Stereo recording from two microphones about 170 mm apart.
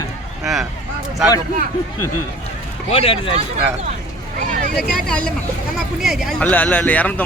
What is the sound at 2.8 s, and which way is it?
Speech, 40° left (ahead or behind).